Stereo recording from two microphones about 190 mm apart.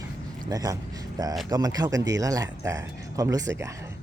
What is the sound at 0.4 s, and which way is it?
Speech, 20° right (ahead or behind).